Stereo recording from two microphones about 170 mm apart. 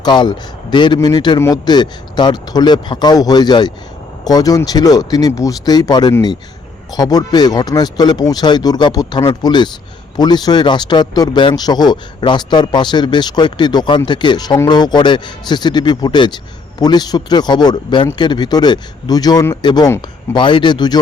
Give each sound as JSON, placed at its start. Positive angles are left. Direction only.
{"t": 0.0, "sound": "speech", "side_deg": 25}